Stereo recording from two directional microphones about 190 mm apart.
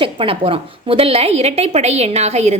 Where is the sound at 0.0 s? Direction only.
30° right (ahead or behind).